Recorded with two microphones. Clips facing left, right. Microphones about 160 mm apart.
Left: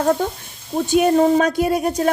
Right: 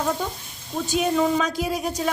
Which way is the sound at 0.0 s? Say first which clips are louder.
Left 7 dB; 55° left (ahead or behind).